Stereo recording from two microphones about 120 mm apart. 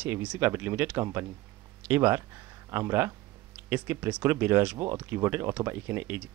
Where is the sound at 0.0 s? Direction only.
10° right (ahead or behind).